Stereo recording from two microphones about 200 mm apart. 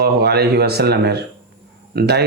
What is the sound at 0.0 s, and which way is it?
Speech, 55° right (ahead or behind).